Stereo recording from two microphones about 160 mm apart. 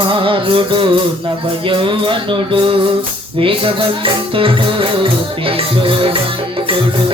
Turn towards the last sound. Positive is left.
turn(degrees=-35)  # may be behind; listen again after turning